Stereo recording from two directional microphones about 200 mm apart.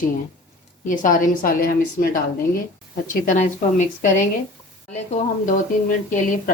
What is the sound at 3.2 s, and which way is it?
Speech, 40° left (ahead or behind).